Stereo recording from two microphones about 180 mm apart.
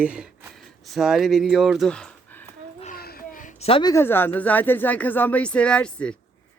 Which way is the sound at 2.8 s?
55° left (ahead or behind).